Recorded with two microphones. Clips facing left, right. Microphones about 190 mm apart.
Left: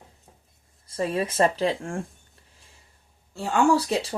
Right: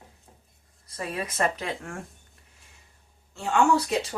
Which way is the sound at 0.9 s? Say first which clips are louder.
Left 7 dB; 30° left (ahead or behind).